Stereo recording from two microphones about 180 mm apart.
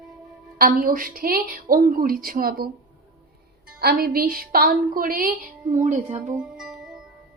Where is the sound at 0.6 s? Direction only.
55° right (ahead or behind).